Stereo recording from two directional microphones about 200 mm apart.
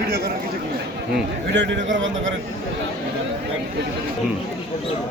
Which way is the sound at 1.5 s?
65° right (ahead or behind).